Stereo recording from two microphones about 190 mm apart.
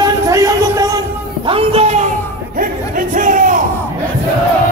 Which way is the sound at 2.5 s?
45° right (ahead or behind).